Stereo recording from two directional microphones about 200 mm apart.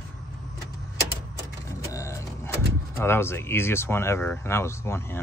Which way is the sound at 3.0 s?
10° left (ahead or behind).